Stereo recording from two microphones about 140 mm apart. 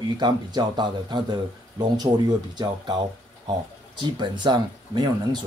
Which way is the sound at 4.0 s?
35° right (ahead or behind).